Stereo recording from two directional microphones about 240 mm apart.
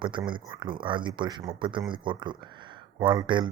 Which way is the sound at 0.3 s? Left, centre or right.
Centre.